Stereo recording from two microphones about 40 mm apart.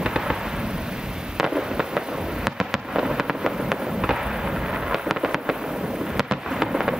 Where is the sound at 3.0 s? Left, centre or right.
Centre.